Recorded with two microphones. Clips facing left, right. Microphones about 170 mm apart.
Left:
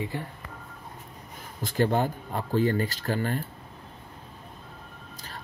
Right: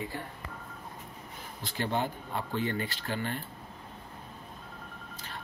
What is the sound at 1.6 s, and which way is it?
Speech, 45° left (ahead or behind).